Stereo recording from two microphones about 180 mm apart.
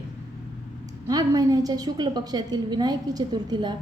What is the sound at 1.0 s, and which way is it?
A woman's voice, 20° right (ahead or behind).